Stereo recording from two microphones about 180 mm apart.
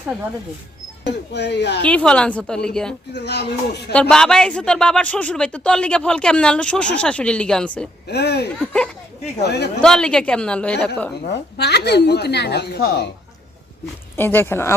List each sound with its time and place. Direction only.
1.0 s a woman's voice: 70° left (ahead or behind)
1.8 s speech: 5° left (ahead or behind)
3.1 s a woman's voice: 70° left (ahead or behind)
4.1 s speech: 5° left (ahead or behind)
8.0 s a woman's voice: 65° left (ahead or behind)
9.8 s speech: 5° left (ahead or behind)
11.3 s a woman's voice: 65° left (ahead or behind)
14.2 s speech: 10° left (ahead or behind)